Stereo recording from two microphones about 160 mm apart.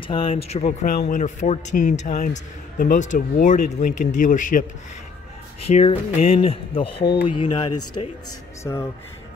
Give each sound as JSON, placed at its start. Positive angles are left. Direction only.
{"t": 0.1, "sound": "a man's voice", "side_deg": 40}
{"t": 5.7, "sound": "speech", "side_deg": 40}
{"t": 7.0, "sound": "speech", "side_deg": 80}
{"t": 7.5, "sound": "speech", "side_deg": 30}